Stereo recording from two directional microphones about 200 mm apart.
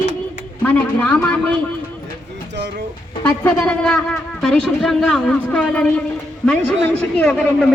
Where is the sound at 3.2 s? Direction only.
5° left (ahead or behind).